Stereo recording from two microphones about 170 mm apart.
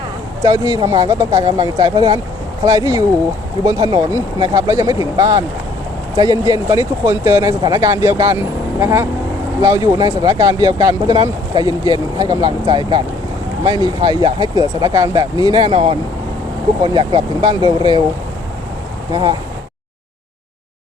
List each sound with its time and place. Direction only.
0.4 s speech: 20° right (ahead or behind)
19.1 s speech: 25° right (ahead or behind)